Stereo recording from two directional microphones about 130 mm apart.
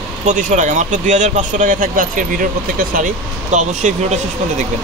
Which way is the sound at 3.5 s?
65° right (ahead or behind).